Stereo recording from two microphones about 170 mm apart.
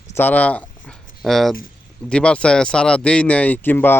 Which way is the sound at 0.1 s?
10° left (ahead or behind).